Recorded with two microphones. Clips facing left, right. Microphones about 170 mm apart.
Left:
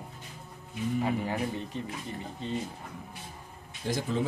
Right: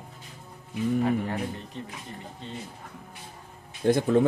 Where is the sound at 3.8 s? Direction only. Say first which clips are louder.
Right 9 dB; 55° right (ahead or behind).